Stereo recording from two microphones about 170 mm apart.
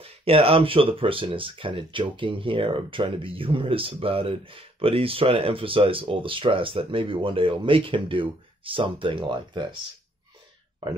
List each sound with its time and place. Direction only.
0.0 s speech: 35° right (ahead or behind)